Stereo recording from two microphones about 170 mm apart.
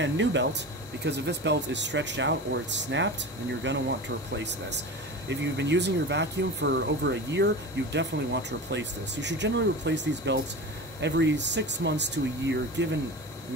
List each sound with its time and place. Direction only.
0.0 s speech: 90° right